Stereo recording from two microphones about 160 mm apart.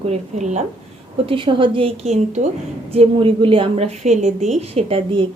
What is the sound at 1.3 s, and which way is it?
A woman's voice, 30° right (ahead or behind).